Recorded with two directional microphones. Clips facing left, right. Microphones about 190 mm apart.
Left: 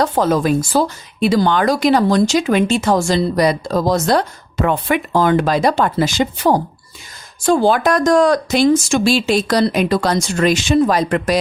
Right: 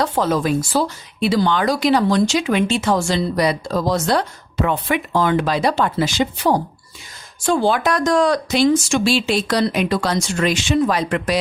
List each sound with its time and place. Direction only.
0.0 s speech: 45° left (ahead or behind)